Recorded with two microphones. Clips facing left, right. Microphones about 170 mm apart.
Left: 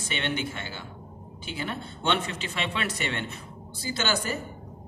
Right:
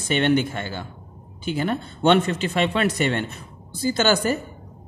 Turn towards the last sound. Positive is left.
turn(degrees=-45)  # may be behind; listen again after turning